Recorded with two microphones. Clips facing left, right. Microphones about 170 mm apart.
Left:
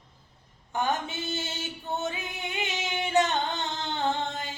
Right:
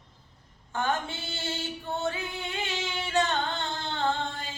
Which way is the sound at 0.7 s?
15° left (ahead or behind).